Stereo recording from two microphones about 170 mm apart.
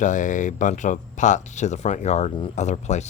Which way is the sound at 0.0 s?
50° left (ahead or behind).